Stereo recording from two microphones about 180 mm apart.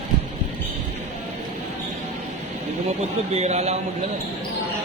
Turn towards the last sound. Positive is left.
turn(degrees=-35)  # may be behind; listen again after turning